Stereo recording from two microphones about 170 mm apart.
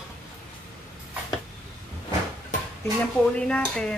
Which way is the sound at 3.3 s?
5° left (ahead or behind).